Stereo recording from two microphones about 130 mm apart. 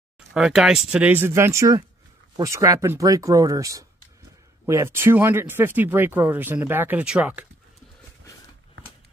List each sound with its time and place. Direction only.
0.3 s speech: 5° right (ahead or behind)